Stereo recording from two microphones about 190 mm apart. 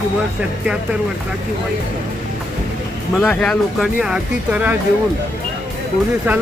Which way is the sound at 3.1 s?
5° left (ahead or behind).